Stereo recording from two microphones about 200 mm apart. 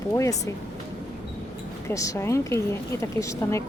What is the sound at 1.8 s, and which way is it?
Speech, 15° left (ahead or behind).